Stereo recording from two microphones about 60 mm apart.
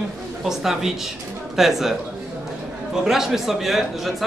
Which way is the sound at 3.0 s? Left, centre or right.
Centre.